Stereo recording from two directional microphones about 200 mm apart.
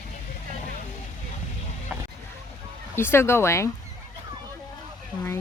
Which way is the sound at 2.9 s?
10° left (ahead or behind).